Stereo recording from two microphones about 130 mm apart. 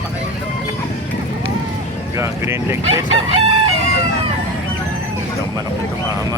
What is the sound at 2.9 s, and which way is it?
Chicken, 55° right (ahead or behind).